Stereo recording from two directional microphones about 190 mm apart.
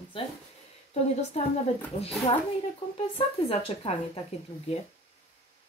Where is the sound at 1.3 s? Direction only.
35° left (ahead or behind).